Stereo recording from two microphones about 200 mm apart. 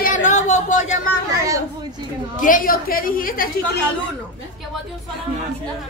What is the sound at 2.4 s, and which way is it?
A woman's voice, 45° left (ahead or behind).